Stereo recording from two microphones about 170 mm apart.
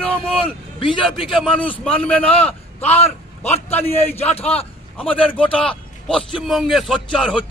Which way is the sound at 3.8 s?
35° left (ahead or behind).